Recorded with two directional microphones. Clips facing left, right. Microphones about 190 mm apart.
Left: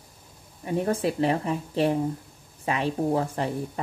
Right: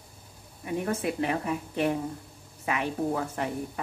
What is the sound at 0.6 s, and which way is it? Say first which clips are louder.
Speech: left 4 dB; 30° left (ahead or behind).